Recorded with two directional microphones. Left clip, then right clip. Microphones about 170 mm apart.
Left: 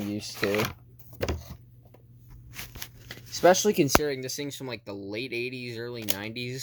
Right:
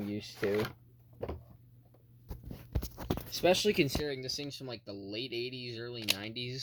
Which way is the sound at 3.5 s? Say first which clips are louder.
Left 7 dB; 5° left (ahead or behind).